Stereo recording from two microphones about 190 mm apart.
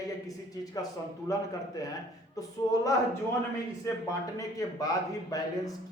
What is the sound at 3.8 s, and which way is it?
A man's voice, 15° left (ahead or behind).